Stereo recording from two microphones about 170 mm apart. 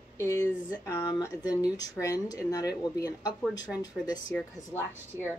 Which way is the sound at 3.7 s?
5° left (ahead or behind).